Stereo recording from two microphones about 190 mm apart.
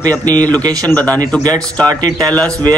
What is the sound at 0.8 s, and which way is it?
Speech, 10° left (ahead or behind).